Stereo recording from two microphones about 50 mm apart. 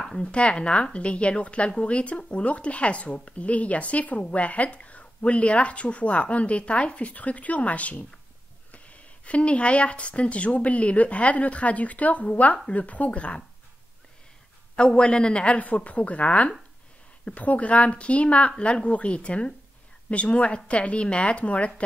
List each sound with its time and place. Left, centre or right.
0.2 s speech: left
14.8 s speech: centre